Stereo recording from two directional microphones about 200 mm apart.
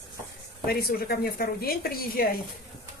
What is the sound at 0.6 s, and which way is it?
A woman's voice, 50° left (ahead or behind).